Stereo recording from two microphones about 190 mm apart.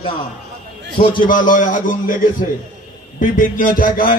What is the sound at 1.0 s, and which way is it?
Speech, 25° left (ahead or behind).